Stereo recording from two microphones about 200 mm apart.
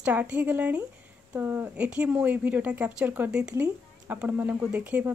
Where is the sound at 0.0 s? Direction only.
10° right (ahead or behind).